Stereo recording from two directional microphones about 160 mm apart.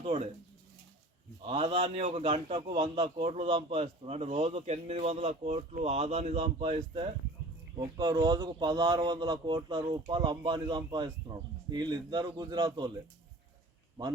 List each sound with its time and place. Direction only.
0.0 s bird: 40° right (ahead or behind)
1.4 s a man's voice: 35° right (ahead or behind)